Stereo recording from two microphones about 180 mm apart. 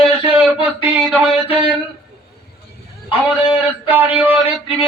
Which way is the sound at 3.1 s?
30° left (ahead or behind).